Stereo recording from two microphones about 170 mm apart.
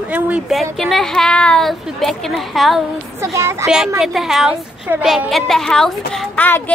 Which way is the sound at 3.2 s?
15° right (ahead or behind).